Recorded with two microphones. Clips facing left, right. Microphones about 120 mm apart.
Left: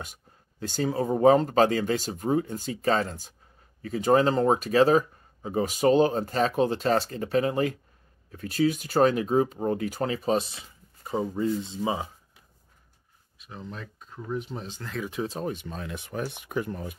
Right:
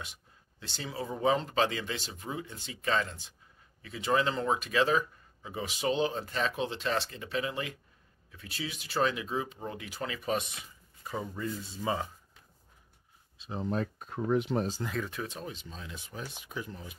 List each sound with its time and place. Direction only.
0.0 s speech: 45° left (ahead or behind); by 12.1 s 15° left (ahead or behind)
13.4 s speech: 35° right (ahead or behind)
13.9 s speech: 60° right (ahead or behind); by 14.6 s 80° right
14.8 s speech: 20° right (ahead or behind)
15.2 s speech: 35° left (ahead or behind)
15.5 s speech: 60° left (ahead or behind)